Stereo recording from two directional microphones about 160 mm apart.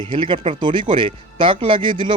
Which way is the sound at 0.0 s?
30° right (ahead or behind).